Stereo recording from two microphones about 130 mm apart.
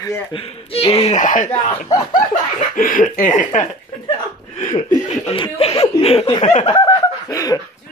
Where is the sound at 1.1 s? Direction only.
80° left.